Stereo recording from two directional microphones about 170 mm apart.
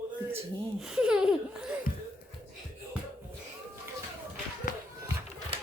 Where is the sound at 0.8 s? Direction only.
5° right (ahead or behind).